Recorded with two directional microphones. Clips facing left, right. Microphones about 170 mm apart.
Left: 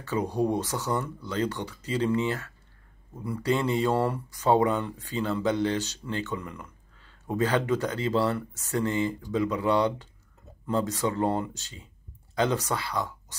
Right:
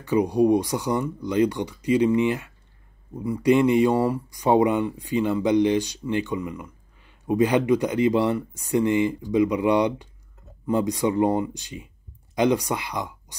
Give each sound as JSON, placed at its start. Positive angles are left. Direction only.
{"t": 0.0, "sound": "speech", "side_deg": -15}